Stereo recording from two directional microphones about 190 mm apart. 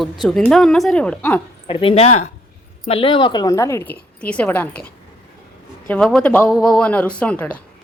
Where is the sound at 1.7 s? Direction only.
30° left (ahead or behind); by 4.8 s 5° left (ahead or behind).